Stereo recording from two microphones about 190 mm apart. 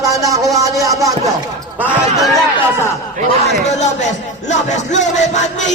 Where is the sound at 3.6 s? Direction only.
35° left (ahead or behind).